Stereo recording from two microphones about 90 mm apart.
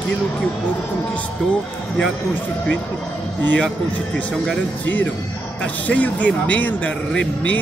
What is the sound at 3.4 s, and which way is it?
Speech, 20° left (ahead or behind).